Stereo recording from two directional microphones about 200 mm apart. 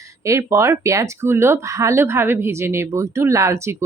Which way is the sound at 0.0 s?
15° right (ahead or behind).